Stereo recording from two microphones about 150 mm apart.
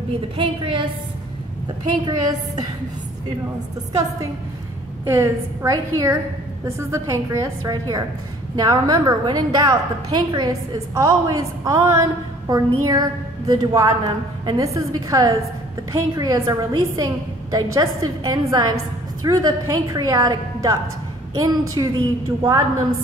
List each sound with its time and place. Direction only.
0.4 s a woman's voice: 35° right (ahead or behind)
2.0 s a woman's voice: 25° right (ahead or behind)
5.0 s a woman's voice: 15° right (ahead or behind)